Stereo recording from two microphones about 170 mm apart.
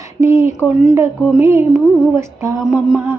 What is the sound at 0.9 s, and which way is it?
Music, 15° right (ahead or behind).